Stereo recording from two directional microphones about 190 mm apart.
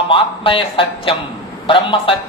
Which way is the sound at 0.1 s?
30° left (ahead or behind).